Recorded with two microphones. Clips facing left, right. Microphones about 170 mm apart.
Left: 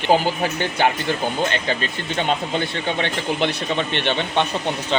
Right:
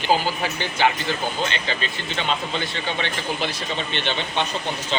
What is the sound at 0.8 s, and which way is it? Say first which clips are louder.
A man's voice: left 1 dB; 50° left (ahead or behind).